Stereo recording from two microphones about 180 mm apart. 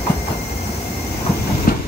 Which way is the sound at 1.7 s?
55° left (ahead or behind).